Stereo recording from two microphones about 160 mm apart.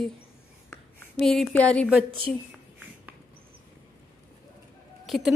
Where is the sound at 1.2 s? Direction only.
5° left (ahead or behind).